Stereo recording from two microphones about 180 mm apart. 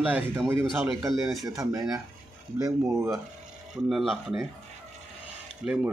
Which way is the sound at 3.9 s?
Centre (ahead or behind).